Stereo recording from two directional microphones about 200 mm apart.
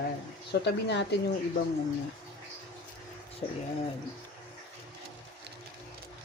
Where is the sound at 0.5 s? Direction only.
60° left (ahead or behind).